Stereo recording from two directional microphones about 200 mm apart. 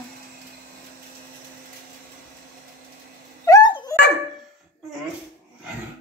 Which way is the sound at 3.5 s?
20° left (ahead or behind).